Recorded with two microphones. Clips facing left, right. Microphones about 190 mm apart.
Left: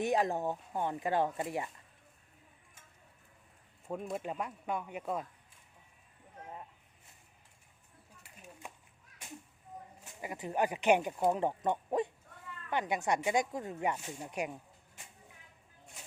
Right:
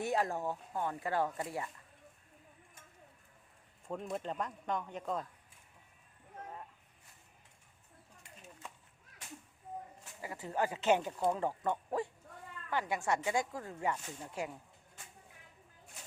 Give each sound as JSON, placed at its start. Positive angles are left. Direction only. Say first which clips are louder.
{"t": 0.0, "sound": "speech", "louder": "left 3 dB", "side_deg": 20}
{"t": 3.8, "sound": "speech", "louder": "left 1 dB", "side_deg": 5}
{"t": 8.2, "sound": "bird", "louder": "left 2 dB", "side_deg": 15}
{"t": 10.0, "sound": "speech", "louder": "left 3 dB", "side_deg": 20}